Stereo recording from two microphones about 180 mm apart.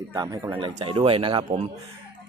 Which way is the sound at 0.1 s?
20° right (ahead or behind).